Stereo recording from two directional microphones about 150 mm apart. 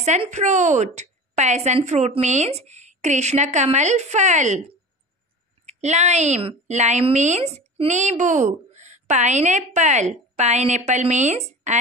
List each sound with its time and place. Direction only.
0.0 s a woman's voice: 50° right (ahead or behind)
5.7 s a woman's voice: 50° right (ahead or behind)